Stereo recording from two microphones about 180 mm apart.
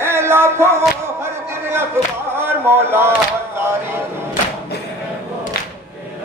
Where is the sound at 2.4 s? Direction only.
10° right (ahead or behind).